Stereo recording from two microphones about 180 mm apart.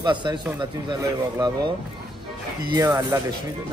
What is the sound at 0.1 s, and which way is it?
Speech, 25° right (ahead or behind).